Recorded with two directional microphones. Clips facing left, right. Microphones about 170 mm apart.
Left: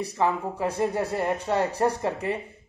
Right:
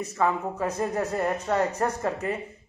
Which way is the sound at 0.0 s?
30° left (ahead or behind).